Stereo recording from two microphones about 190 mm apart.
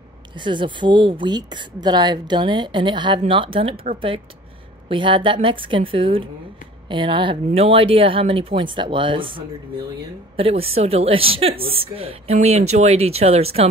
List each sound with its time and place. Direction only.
0.3 s speech: 25° right (ahead or behind)
4.8 s speech: 25° right (ahead or behind)